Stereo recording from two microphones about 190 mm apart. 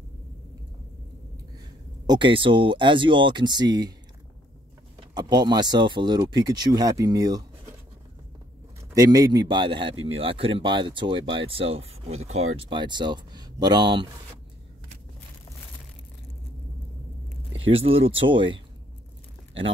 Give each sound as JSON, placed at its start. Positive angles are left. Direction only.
{"t": 2.0, "sound": "speech", "side_deg": -25}
{"t": 5.1, "sound": "speech", "side_deg": -20}
{"t": 8.9, "sound": "speech", "side_deg": -20}
{"t": 12.5, "sound": "speech", "side_deg": -25}
{"t": 17.6, "sound": "speech", "side_deg": -30}